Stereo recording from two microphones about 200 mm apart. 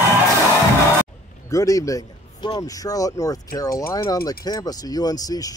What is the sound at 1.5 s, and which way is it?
Speech, 15° left (ahead or behind).